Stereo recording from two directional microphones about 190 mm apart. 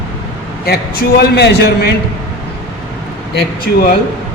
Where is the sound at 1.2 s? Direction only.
60° left (ahead or behind).